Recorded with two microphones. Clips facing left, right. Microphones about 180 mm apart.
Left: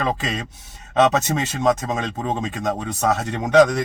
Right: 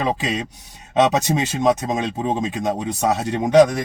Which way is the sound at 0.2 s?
10° right (ahead or behind).